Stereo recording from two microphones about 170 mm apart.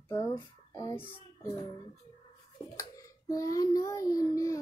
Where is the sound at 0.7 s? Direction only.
20° left (ahead or behind).